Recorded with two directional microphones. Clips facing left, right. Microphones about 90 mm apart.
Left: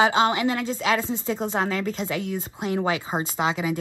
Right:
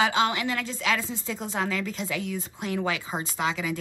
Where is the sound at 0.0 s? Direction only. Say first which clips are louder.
Left 4 dB; 30° left (ahead or behind).